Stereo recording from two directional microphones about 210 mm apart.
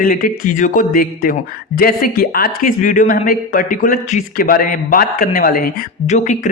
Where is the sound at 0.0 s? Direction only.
40° left (ahead or behind).